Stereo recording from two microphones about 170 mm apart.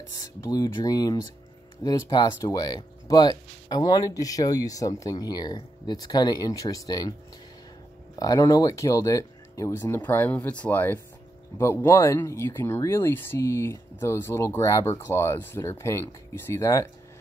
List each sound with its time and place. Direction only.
0.1 s speech: 20° left (ahead or behind)
8.2 s speech: 20° left (ahead or behind)